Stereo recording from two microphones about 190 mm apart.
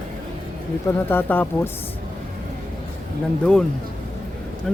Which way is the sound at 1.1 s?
10° left (ahead or behind).